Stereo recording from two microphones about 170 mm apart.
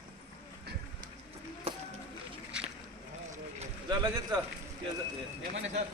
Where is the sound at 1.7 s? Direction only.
35° right (ahead or behind).